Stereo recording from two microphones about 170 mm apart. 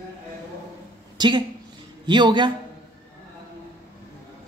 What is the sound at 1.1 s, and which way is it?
A woman's voice, 25° right (ahead or behind).